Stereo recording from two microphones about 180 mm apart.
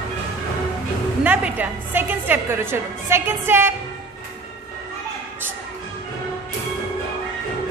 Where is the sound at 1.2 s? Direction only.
10° right (ahead or behind).